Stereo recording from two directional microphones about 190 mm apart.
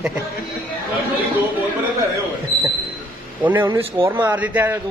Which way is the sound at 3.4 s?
10° right (ahead or behind).